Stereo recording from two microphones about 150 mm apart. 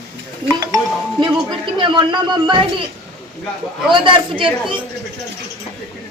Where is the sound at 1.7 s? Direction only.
30° right (ahead or behind).